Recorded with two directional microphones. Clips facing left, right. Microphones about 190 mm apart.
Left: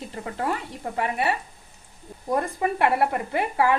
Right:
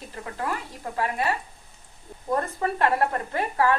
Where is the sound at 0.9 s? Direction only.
20° left (ahead or behind).